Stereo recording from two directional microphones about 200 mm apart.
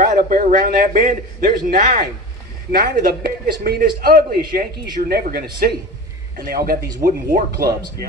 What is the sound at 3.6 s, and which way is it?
A man's voice, 50° right (ahead or behind).